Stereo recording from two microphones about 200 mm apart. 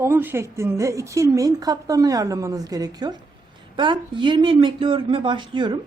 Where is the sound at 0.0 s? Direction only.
10° right (ahead or behind).